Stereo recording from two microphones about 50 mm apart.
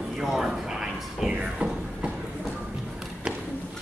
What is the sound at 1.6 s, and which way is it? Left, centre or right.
Train, right.